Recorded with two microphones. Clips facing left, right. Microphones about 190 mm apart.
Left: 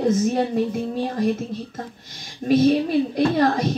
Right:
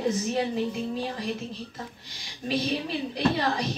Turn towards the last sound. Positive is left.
turn(degrees=50)  # may be behind; listen again after turning